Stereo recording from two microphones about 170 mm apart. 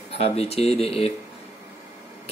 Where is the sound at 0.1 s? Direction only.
35° left (ahead or behind).